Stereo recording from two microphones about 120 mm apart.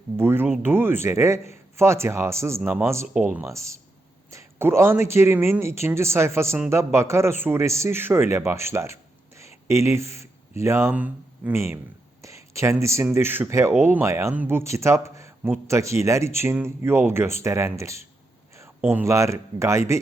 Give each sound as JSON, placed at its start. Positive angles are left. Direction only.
{"t": 0.2, "sound": "speech", "side_deg": -20}
{"t": 15.1, "sound": "a sound", "side_deg": -25}
{"t": 15.6, "sound": "speech", "side_deg": -25}